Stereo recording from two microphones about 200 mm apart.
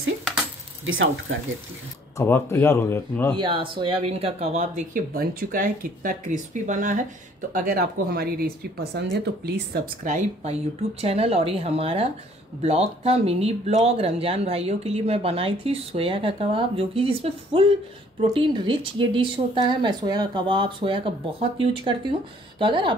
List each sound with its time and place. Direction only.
0.8 s speech: 80° right
2.1 s speech: 15° left (ahead or behind)
3.3 s speech: 25° right (ahead or behind); by 9.1 s 55° right (ahead or behind)
10.0 s speech: 35° right (ahead or behind)